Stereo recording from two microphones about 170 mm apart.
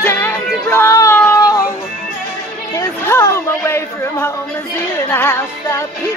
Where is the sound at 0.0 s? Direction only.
15° left (ahead or behind).